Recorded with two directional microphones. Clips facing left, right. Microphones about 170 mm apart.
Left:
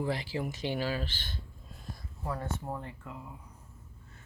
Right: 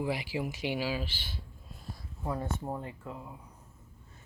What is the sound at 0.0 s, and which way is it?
Speech, 10° right (ahead or behind).